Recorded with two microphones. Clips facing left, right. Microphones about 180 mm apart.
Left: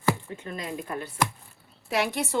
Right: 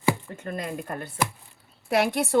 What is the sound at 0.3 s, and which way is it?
A woman's voice, 50° right (ahead or behind).